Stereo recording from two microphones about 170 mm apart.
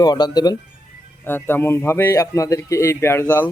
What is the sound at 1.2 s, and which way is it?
Speech, 10° left (ahead or behind).